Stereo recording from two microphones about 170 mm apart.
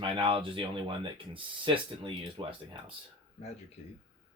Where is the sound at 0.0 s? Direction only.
30° right (ahead or behind).